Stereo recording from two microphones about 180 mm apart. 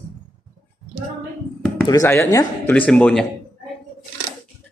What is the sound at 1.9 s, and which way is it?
A man's voice, 15° left (ahead or behind).